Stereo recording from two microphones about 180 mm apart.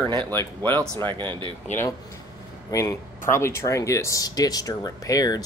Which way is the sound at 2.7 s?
15° left (ahead or behind).